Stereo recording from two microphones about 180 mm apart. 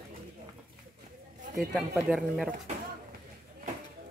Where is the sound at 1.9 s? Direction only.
5° right (ahead or behind).